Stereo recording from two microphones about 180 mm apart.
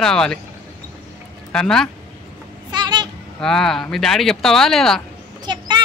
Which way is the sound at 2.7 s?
25° right (ahead or behind).